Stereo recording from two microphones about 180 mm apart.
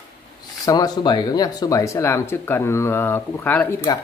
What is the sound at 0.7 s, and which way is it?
Speech, 20° left (ahead or behind).